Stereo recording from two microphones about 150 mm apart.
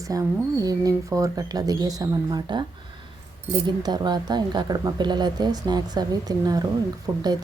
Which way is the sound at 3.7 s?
30° right (ahead or behind).